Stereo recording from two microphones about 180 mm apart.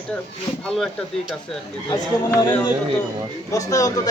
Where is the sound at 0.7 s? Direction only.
Centre (ahead or behind).